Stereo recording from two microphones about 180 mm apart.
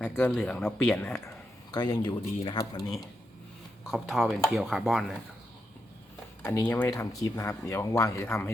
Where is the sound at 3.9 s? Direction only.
Centre (ahead or behind).